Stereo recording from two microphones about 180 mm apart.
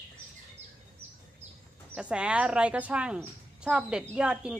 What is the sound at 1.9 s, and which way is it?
Speech, 5° right (ahead or behind).